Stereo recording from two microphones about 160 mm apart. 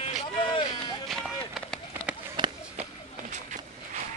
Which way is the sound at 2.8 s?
50° right (ahead or behind).